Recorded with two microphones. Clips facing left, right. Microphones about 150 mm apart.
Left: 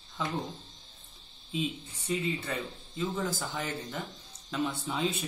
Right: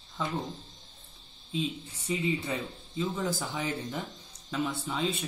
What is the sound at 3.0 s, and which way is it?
Speech, 5° right (ahead or behind).